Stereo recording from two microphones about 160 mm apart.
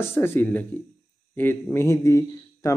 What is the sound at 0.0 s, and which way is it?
Speech, 15° left (ahead or behind).